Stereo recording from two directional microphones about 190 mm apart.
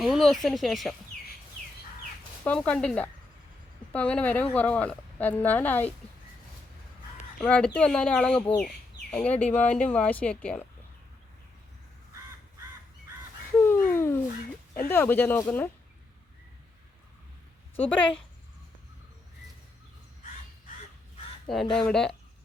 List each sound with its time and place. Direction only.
0.0 s speech: centre (ahead or behind)
2.4 s speech: 5° left (ahead or behind)
7.3 s speech: 5° left (ahead or behind)
13.8 s dog: 10° left (ahead or behind)
14.8 s speech: 10° left (ahead or behind)
17.8 s speech: 5° left (ahead or behind)
21.5 s speech: centre (ahead or behind)